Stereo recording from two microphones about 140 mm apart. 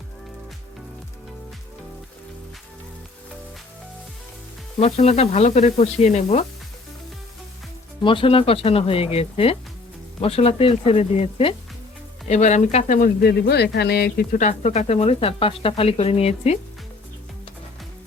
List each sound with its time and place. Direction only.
4.8 s speech: 50° left (ahead or behind)
8.0 s speech: 40° left (ahead or behind)
12.3 s speech: 55° left (ahead or behind)